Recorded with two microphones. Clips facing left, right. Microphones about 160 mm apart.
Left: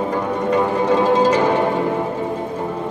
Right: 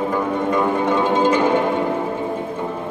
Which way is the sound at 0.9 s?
35° left (ahead or behind).